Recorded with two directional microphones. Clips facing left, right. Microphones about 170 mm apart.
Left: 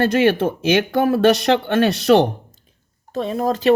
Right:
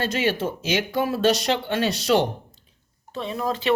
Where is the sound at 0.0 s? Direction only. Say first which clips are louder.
Left 8 dB; 60° left (ahead or behind).